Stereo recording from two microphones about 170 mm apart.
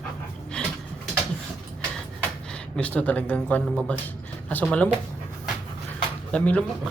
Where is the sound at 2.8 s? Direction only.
10° left (ahead or behind).